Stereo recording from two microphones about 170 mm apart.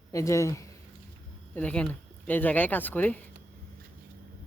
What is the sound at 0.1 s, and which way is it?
Speech, 15° left (ahead or behind).